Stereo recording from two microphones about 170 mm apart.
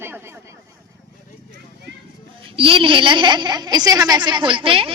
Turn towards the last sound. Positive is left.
turn(degrees=-30)  # may be behind; listen again after turning